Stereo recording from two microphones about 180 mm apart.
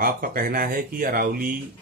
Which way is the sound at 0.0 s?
55° right (ahead or behind).